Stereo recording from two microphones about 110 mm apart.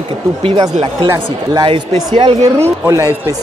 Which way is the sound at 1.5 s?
45° right (ahead or behind).